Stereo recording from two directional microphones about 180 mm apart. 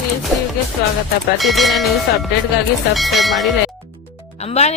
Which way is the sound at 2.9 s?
Centre (ahead or behind).